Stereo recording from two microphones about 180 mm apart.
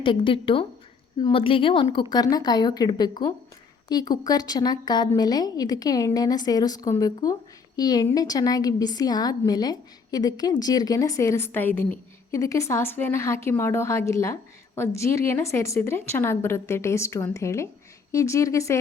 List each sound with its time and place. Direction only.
0.0 s a woman's voice: 30° left (ahead or behind)